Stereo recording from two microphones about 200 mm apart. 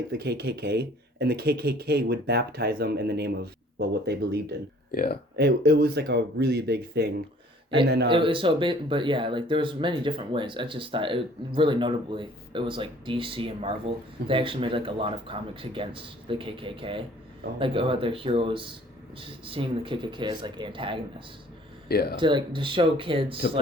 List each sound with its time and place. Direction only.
0.1 s speech: 55° right (ahead or behind)
4.9 s speech: 45° left (ahead or behind)
5.4 s speech: 55° right (ahead or behind)
8.1 s speech: 25° right (ahead or behind)
21.8 s speech: 50° left (ahead or behind)
22.2 s speech: 25° right (ahead or behind)